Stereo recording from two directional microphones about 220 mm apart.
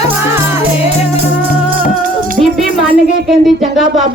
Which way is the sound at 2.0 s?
40° right (ahead or behind).